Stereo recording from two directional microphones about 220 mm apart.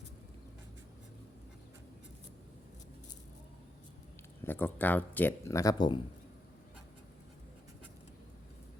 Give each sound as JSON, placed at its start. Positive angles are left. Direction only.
{"t": 4.4, "sound": "speech", "side_deg": 10}